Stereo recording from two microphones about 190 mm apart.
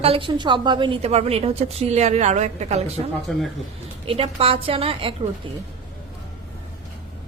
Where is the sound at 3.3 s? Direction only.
Centre (ahead or behind).